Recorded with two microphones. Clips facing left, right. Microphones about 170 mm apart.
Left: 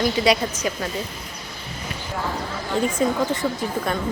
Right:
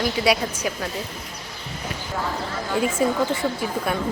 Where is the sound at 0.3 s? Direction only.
10° right (ahead or behind).